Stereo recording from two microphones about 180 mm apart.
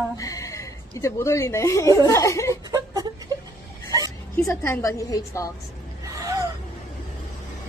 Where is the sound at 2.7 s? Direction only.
20° right (ahead or behind).